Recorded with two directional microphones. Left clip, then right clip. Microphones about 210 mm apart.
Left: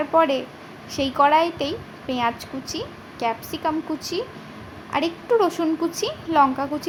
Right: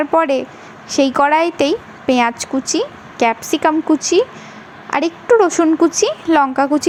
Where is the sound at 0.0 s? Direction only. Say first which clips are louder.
Right 5 dB; 40° right (ahead or behind).